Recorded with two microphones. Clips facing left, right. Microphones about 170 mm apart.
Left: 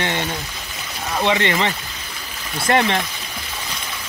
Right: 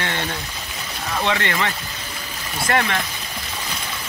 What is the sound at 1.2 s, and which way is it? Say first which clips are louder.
Speech: left 4 dB; 20° left (ahead or behind).